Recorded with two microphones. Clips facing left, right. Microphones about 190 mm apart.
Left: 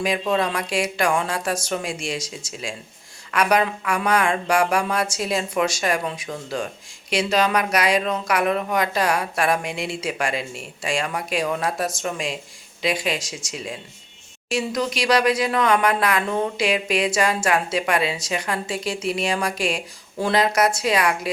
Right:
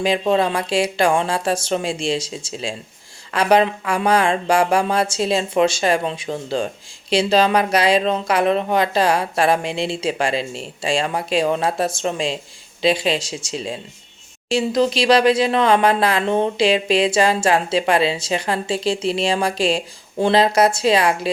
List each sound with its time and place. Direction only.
0.0 s speech: 30° right (ahead or behind)